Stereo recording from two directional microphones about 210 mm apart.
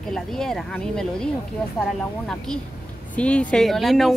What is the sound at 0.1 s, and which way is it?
Speech, centre (ahead or behind).